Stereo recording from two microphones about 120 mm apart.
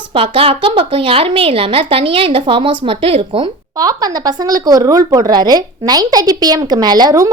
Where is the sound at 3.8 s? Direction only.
30° right (ahead or behind).